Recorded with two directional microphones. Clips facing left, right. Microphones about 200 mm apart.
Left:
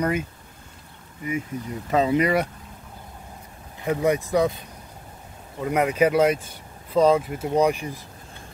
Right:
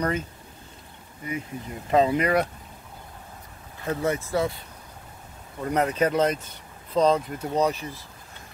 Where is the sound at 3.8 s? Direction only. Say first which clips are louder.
Left 4 dB; 15° left (ahead or behind).